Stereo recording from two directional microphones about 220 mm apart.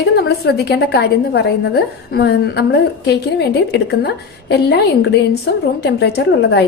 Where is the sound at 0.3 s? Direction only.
50° left (ahead or behind).